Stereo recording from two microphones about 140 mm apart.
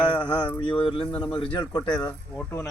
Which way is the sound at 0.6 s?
35° left (ahead or behind).